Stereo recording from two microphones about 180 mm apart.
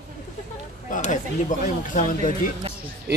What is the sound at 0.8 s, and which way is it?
Speech, 45° left (ahead or behind).